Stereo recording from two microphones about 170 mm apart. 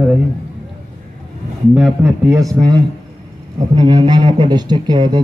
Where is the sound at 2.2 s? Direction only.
20° right (ahead or behind).